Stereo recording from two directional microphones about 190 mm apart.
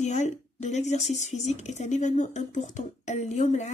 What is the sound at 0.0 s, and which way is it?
A woman's voice, 35° left (ahead or behind).